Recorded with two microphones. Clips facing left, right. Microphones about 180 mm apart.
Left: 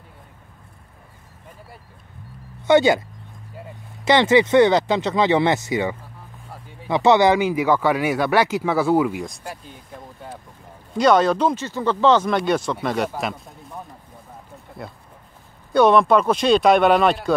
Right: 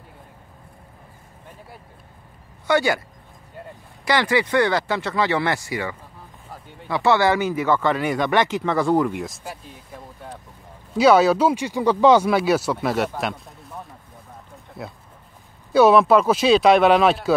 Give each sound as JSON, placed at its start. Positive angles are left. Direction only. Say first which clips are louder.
{"t": 2.6, "sound": "speech", "louder": "left 5 dB", "side_deg": 20}
{"t": 4.0, "sound": "speech", "louder": "left 5 dB", "side_deg": 25}
{"t": 6.5, "sound": "a sound", "louder": "right 1 dB", "side_deg": 0}
{"t": 6.9, "sound": "speech", "louder": "left 3 dB", "side_deg": 20}